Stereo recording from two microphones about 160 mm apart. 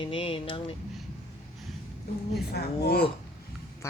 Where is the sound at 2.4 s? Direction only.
85° left.